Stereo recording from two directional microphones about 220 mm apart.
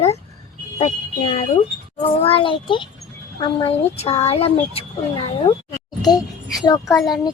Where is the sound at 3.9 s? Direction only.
30° left (ahead or behind).